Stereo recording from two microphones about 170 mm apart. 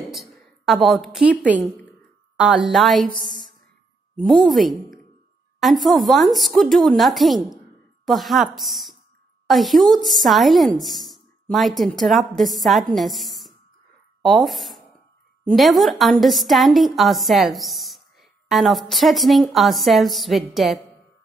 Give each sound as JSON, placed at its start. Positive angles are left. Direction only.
{"t": 0.1, "sound": "a woman's voice", "side_deg": 0}
{"t": 1.6, "sound": "a woman's voice", "side_deg": 10}
{"t": 2.3, "sound": "a woman's voice", "side_deg": 0}
{"t": 4.2, "sound": "a woman's voice", "side_deg": 0}